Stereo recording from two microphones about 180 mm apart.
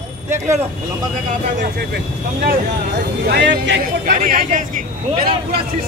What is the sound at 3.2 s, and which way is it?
Speech, 65° right (ahead or behind).